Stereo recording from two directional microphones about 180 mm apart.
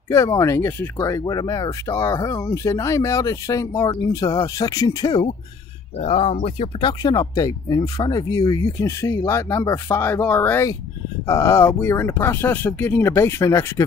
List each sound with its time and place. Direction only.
0.1 s speech: 15° left (ahead or behind)
5.9 s speech: 35° left (ahead or behind); by 13.8 s 15° left (ahead or behind)